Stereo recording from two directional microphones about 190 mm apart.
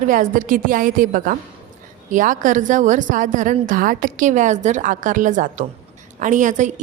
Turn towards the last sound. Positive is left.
turn(degrees=-40)  # may be behind; listen again after turning